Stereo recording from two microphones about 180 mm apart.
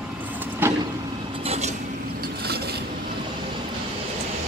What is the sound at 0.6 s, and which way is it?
Vehicle, 10° right (ahead or behind).